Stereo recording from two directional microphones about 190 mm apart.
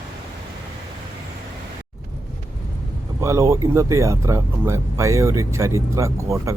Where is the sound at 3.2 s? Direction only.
15° right (ahead or behind).